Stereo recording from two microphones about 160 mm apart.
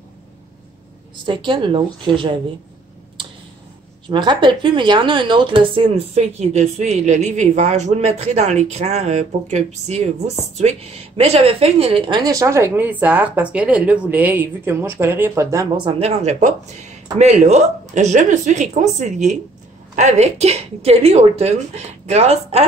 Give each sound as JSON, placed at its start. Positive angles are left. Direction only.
{"t": 1.1, "sound": "a woman's voice", "side_deg": -30}
{"t": 4.1, "sound": "a woman's voice", "side_deg": -30}
{"t": 12.2, "sound": "speech", "side_deg": -20}
{"t": 15.9, "sound": "a woman's voice", "side_deg": -40}